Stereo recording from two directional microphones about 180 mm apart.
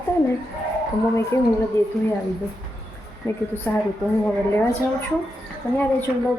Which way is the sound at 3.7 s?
10° left (ahead or behind).